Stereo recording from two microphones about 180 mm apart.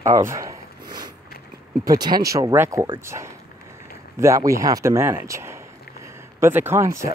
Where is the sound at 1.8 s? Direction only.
20° right (ahead or behind).